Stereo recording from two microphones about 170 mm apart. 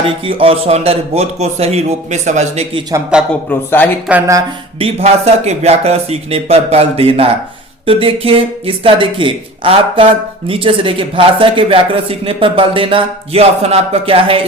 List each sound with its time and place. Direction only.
0.0 s speech: 30° right (ahead or behind)
3.1 s speech: 5° right (ahead or behind)
3.5 s speech: 10° left (ahead or behind)
4.1 s speech: 20° right (ahead or behind)
4.8 s speech: 35° right (ahead or behind)